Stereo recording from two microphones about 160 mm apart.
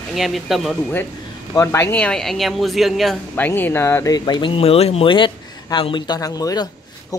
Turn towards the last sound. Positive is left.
turn(degrees=25)  # may be behind; listen again after turning